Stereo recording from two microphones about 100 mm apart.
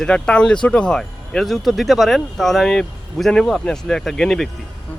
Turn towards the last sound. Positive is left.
turn(degrees=5)  # may be behind; listen again after turning